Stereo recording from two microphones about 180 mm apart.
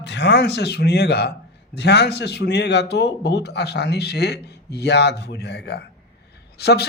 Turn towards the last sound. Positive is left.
turn(degrees=65)  # may be behind; listen again after turning